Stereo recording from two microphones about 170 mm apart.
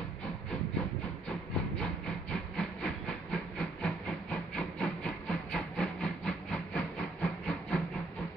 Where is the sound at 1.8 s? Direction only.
5° left (ahead or behind).